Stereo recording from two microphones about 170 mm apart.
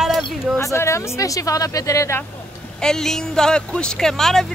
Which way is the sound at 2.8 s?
5° left (ahead or behind).